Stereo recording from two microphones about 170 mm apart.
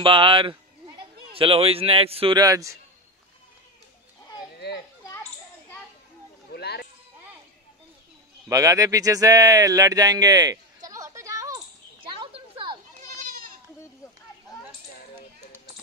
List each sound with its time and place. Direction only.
0.0 s a man's voice: 30° right (ahead or behind)
4.6 s children playing: 75° left (ahead or behind)
6.5 s a sound: 75° left (ahead or behind)
8.5 s speech: 20° right (ahead or behind)
12.0 s a sound: 30° right (ahead or behind)
13.2 s goat: 55° right (ahead or behind)